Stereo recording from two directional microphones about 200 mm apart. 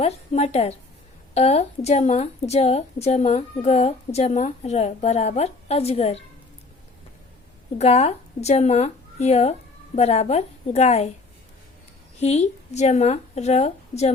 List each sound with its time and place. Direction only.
0.0 s a woman's voice: 30° left (ahead or behind)
7.8 s speech: 30° left (ahead or behind)
12.2 s a woman's voice: 30° left (ahead or behind)